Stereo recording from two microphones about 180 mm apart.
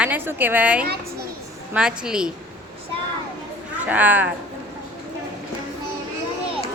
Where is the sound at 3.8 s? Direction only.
10° right (ahead or behind).